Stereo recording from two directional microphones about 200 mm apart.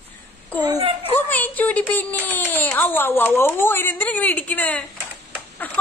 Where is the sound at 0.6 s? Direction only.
20° right (ahead or behind).